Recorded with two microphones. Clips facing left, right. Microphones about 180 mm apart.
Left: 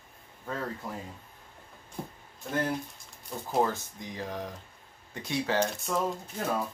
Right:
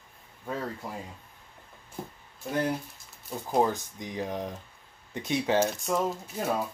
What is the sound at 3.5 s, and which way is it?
Speech, 15° right (ahead or behind).